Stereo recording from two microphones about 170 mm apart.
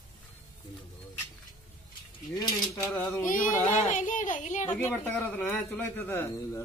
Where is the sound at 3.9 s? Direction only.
45° left (ahead or behind).